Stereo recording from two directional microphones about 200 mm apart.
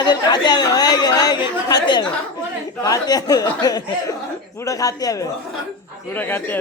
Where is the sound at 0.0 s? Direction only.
20° left (ahead or behind).